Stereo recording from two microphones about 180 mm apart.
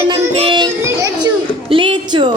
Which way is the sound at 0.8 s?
20° right (ahead or behind).